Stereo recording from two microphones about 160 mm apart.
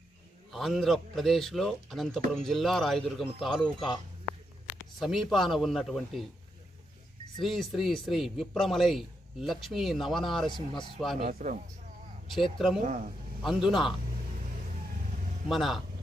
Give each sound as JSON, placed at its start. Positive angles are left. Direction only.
{"t": 0.5, "sound": "a man's voice", "side_deg": 0}
{"t": 4.9, "sound": "a man's voice", "side_deg": 0}
{"t": 7.4, "sound": "a man's voice", "side_deg": 0}
{"t": 11.3, "sound": "speech", "side_deg": -55}
{"t": 12.3, "sound": "a man's voice", "side_deg": 0}
{"t": 12.8, "sound": "a man's voice", "side_deg": -55}
{"t": 13.4, "sound": "a man's voice", "side_deg": 0}
{"t": 15.4, "sound": "a man's voice", "side_deg": 0}